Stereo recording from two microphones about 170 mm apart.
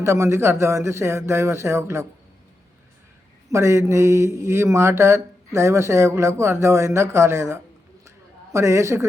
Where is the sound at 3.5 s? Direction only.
15° right (ahead or behind).